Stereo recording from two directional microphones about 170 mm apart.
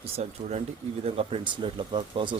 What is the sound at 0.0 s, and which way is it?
Speech, 40° right (ahead or behind).